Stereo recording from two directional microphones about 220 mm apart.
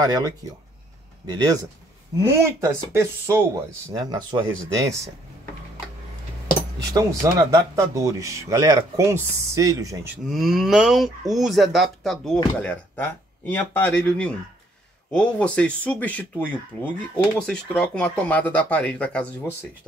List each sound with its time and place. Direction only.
0.0 s speech: 15° right (ahead or behind)
6.9 s speech: 15° right (ahead or behind)
10.3 s speech: centre (ahead or behind)